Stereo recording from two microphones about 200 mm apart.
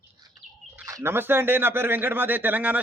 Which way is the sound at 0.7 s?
15° right (ahead or behind).